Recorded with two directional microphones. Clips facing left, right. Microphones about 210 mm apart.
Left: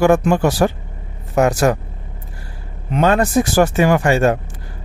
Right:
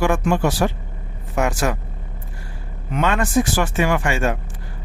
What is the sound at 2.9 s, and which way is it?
Speech, 40° left (ahead or behind).